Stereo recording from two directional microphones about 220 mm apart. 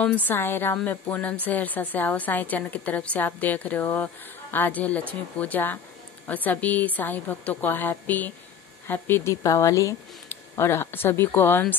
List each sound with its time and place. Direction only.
0.0 s speech: 5° left (ahead or behind)